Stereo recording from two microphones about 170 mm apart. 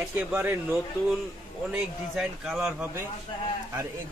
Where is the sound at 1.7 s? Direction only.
5° right (ahead or behind).